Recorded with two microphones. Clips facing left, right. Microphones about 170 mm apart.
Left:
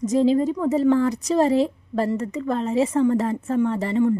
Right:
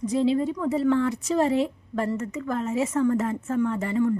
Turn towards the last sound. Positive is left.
turn(degrees=35)  # may be behind; listen again after turning